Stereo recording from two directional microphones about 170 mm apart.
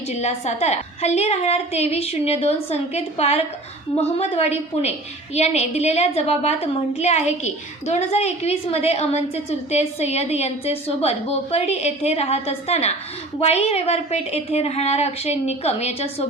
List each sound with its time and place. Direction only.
0.1 s a woman's voice: 40° left (ahead or behind)